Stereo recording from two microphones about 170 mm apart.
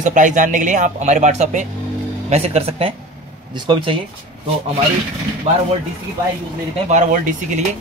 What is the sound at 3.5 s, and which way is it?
Speech, 25° right (ahead or behind).